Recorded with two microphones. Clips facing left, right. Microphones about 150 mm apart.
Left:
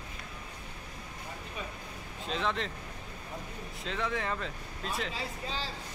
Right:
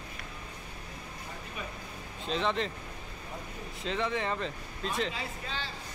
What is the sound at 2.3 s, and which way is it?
Speech, centre (ahead or behind).